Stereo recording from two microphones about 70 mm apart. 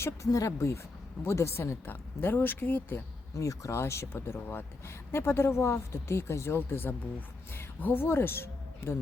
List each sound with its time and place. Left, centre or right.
0.0 s speech: left
1.2 s a woman's voice: left
3.3 s a woman's voice: left